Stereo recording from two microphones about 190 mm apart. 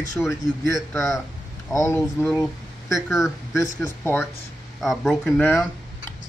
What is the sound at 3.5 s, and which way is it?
Speech, 15° left (ahead or behind).